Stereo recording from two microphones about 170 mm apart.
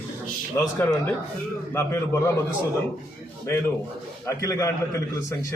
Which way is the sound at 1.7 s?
15° left (ahead or behind).